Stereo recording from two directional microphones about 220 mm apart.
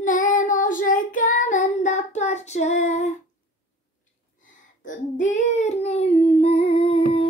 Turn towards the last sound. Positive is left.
turn(degrees=25)  # may be behind; listen again after turning